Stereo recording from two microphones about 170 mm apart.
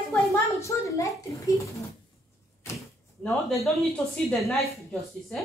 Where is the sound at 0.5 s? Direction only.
15° left (ahead or behind).